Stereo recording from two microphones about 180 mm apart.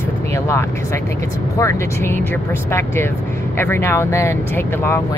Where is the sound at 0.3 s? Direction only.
15° left (ahead or behind).